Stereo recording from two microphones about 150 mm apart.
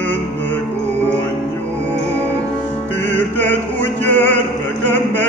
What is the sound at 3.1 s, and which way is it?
Music, 10° left (ahead or behind).